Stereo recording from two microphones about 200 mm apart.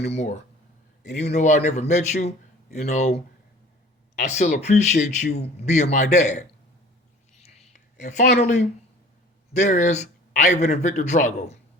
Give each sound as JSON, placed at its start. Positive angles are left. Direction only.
{"t": 0.1, "sound": "speech", "side_deg": 35}
{"t": 4.1, "sound": "speech", "side_deg": 35}
{"t": 7.4, "sound": "a sound", "side_deg": 35}
{"t": 8.2, "sound": "speech", "side_deg": 55}
{"t": 9.5, "sound": "speech", "side_deg": 35}